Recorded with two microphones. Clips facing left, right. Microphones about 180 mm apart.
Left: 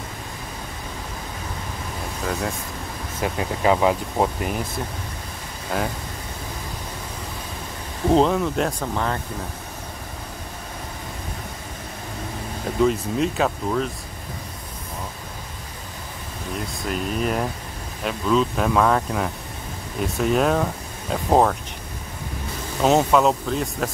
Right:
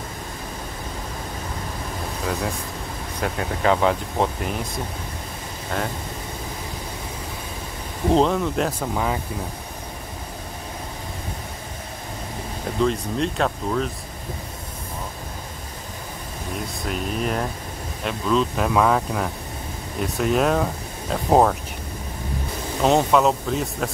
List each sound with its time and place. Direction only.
3.2 s speech: 10° left (ahead or behind)
5.7 s speech: 5° left (ahead or behind)
8.1 s speech: centre (ahead or behind)
12.8 s speech: 5° left (ahead or behind)
16.5 s speech: centre (ahead or behind)
22.8 s speech: centre (ahead or behind)